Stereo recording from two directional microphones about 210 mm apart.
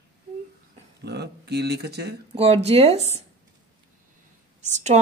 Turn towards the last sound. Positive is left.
turn(degrees=-35)  # may be behind; listen again after turning